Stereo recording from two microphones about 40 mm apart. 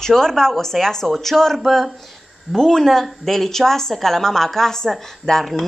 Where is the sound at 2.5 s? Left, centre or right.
Centre.